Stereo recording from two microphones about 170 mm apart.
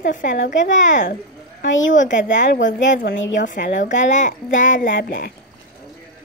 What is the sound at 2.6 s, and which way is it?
Speech, 90° left.